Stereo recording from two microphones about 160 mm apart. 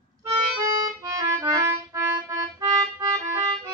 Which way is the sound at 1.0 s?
20° right (ahead or behind).